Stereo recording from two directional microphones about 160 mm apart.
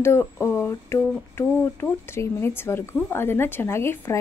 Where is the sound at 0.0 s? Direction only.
15° left (ahead or behind).